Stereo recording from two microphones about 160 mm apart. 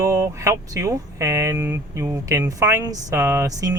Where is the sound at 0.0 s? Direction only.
20° right (ahead or behind).